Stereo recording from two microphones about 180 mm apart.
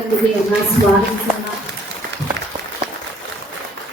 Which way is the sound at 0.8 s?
55° right (ahead or behind).